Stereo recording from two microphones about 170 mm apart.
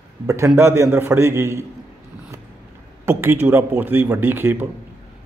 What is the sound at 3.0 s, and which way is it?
A man's voice, 10° right (ahead or behind).